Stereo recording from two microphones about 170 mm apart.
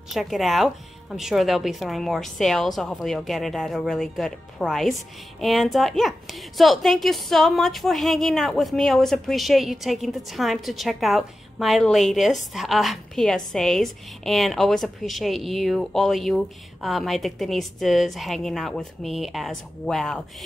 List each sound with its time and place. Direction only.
0.1 s a woman's voice: centre (ahead or behind)